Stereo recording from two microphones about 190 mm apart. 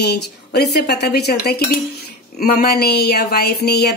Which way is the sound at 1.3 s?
50° left (ahead or behind).